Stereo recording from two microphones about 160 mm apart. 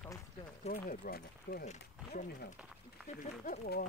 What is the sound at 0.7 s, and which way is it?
Speech, 65° left (ahead or behind).